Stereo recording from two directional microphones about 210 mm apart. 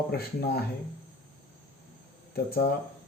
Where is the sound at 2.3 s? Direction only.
45° left (ahead or behind).